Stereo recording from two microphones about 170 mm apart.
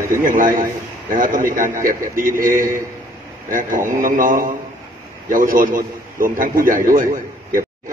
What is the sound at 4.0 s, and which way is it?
A man's voice, 55° right (ahead or behind).